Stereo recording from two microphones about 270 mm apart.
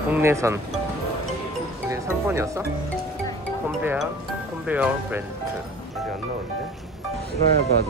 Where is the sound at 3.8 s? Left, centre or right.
Centre.